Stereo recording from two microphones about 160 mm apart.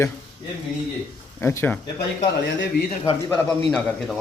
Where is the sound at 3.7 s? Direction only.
5° left (ahead or behind).